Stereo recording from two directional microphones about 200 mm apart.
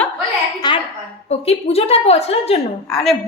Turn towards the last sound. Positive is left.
turn(degrees=0)  # may be behind; listen again after turning